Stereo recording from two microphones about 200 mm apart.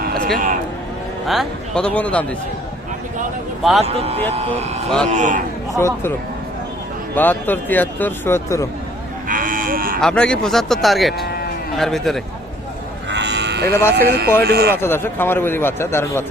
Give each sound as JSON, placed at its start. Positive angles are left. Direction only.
{"t": 0.0, "sound": "a sound", "side_deg": -50}
{"t": 1.3, "sound": "speech", "side_deg": 0}
{"t": 3.6, "sound": "speech", "side_deg": 0}
{"t": 3.8, "sound": "speech", "side_deg": -30}
{"t": 5.7, "sound": "a man's voice", "side_deg": 10}
{"t": 7.2, "sound": "a man's voice", "side_deg": 10}
{"t": 9.3, "sound": "sheep", "side_deg": -45}
{"t": 10.0, "sound": "speech", "side_deg": 5}
{"t": 13.1, "sound": "electric shaver", "side_deg": -60}
{"t": 13.7, "sound": "a man's voice", "side_deg": 15}
{"t": 13.9, "sound": "speech", "side_deg": -55}
{"t": 14.7, "sound": "a man's voice", "side_deg": 10}